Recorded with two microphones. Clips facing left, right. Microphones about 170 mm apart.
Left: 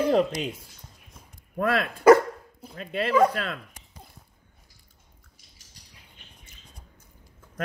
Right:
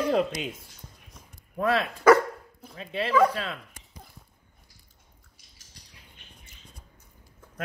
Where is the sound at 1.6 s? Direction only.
55° left (ahead or behind).